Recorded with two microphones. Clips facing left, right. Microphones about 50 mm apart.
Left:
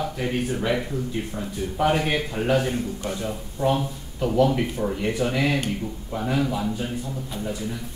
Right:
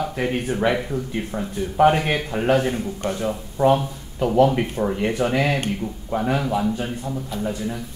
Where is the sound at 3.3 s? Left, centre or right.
Right.